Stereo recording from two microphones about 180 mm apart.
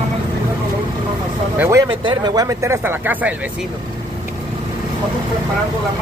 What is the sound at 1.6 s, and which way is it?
Speech, 15° right (ahead or behind).